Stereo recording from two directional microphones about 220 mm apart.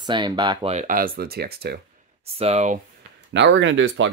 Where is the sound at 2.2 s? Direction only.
25° right (ahead or behind).